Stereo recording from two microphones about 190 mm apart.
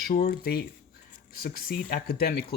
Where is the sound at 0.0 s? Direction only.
45° left (ahead or behind).